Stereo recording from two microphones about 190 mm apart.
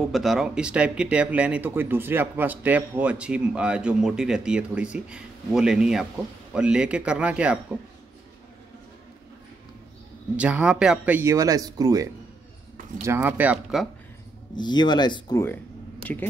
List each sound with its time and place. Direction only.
0.1 s speech: centre (ahead or behind)
10.3 s speech: 5° right (ahead or behind)
14.5 s speech: 25° left (ahead or behind)
15.4 s a sound: 10° left (ahead or behind)